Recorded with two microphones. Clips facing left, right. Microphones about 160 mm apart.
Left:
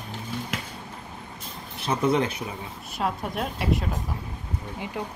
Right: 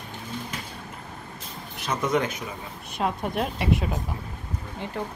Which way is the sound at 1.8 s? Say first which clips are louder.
Left 2 dB; 30° left (ahead or behind).